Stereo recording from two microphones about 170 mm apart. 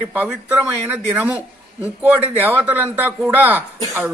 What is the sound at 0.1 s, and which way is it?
A man's voice, 10° right (ahead or behind).